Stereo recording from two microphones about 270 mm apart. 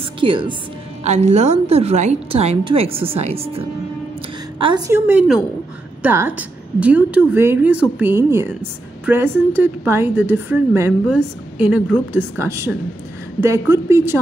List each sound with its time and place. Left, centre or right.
0.2 s a woman's voice: centre